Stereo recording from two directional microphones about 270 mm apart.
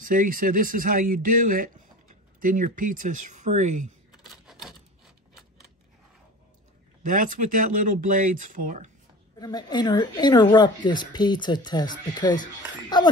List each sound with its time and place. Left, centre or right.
0.0 s speech: right
4.5 s rub: centre
7.0 s speech: right
9.4 s speech: centre